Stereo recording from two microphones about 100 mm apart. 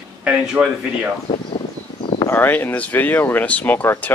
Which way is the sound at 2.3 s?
20° left (ahead or behind).